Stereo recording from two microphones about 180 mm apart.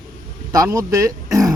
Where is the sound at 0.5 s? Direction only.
20° right (ahead or behind).